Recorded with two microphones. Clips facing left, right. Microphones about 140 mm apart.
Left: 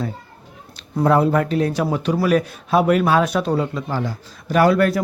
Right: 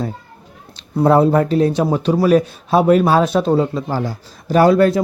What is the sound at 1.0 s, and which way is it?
Speech, 30° right (ahead or behind).